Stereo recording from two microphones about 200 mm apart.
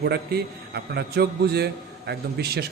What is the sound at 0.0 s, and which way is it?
A man's voice, 55° right (ahead or behind).